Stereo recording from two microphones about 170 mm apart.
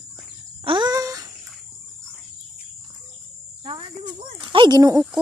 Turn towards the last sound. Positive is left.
turn(degrees=-25)  # may be behind; listen again after turning